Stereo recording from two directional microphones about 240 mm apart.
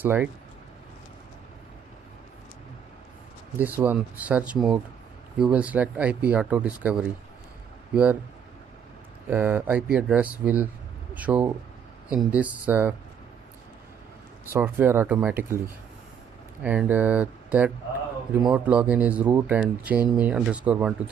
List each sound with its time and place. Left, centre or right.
0.0 s speech: centre
3.5 s speech: centre
9.3 s speech: centre
14.5 s speech: centre
16.6 s speech: centre